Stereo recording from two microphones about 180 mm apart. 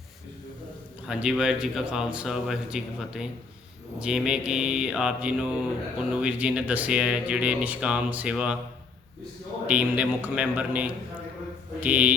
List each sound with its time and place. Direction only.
1.0 s speech: 5° right (ahead or behind)
9.6 s a man's voice: 5° right (ahead or behind)